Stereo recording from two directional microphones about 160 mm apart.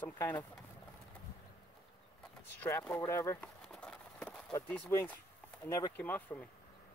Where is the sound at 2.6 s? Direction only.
15° left (ahead or behind).